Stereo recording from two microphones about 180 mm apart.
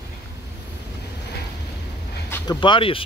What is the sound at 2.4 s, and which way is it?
Speech, 25° left (ahead or behind).